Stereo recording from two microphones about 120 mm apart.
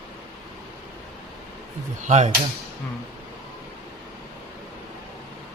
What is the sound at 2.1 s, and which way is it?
Speech, 75° right (ahead or behind).